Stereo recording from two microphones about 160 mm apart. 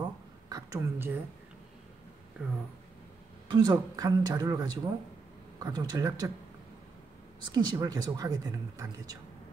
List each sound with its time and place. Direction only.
0.5 s a woman's voice: 20° right (ahead or behind)
2.4 s speech: 5° right (ahead or behind)
3.4 s a woman's voice: 25° right (ahead or behind)
7.5 s a woman's voice: 25° right (ahead or behind)